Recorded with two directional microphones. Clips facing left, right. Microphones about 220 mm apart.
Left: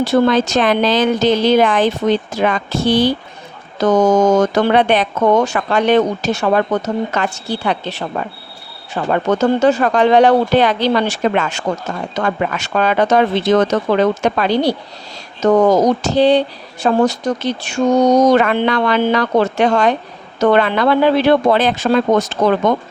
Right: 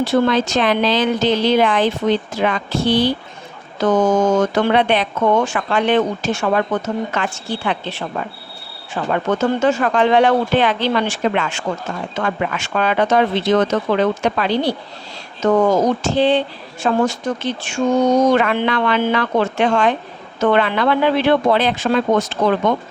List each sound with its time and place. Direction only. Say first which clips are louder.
0.0 s speech: left 3 dB; 45° left (ahead or behind)
9.0 s speech: left 3 dB; 35° left (ahead or behind)